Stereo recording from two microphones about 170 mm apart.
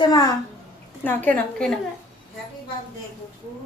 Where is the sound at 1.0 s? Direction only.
10° left (ahead or behind).